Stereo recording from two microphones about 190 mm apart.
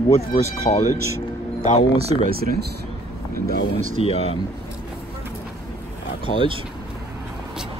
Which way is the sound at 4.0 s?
30° left (ahead or behind).